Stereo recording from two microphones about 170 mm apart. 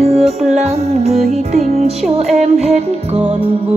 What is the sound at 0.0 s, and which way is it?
Music, 40° right (ahead or behind).